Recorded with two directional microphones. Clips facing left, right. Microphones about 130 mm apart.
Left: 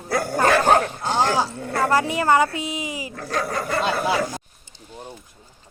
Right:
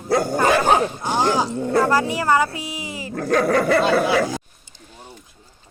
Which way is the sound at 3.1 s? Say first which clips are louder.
Right 10 dB; 50° right (ahead or behind).